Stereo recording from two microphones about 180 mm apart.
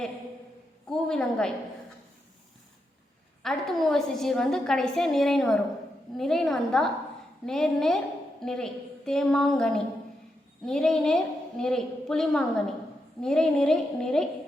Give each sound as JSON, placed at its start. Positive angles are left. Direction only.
{"t": 0.9, "sound": "a woman's voice", "side_deg": 5}
{"t": 3.4, "sound": "a woman's voice", "side_deg": 0}